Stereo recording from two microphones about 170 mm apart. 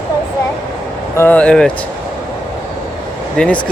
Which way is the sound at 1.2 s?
10° left (ahead or behind).